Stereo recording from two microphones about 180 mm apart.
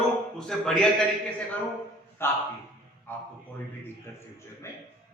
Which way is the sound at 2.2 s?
15° left (ahead or behind).